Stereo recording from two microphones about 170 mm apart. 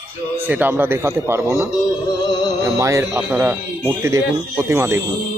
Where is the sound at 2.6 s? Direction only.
20° right (ahead or behind).